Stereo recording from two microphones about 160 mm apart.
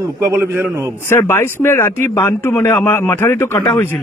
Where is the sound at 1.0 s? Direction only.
15° left (ahead or behind).